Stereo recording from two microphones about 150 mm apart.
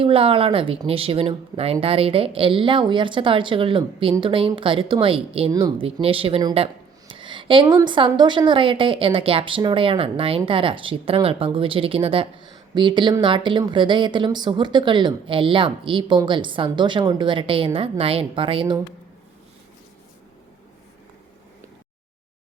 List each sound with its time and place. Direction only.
0.0 s a woman's voice: 40° right (ahead or behind)
5.5 s speech: 25° right (ahead or behind)
5.8 s a woman's voice: 40° right (ahead or behind)